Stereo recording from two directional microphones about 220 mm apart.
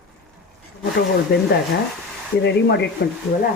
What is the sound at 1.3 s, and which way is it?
A woman's voice, 45° left (ahead or behind).